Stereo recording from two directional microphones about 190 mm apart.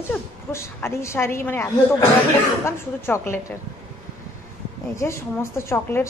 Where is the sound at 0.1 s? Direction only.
10° left (ahead or behind).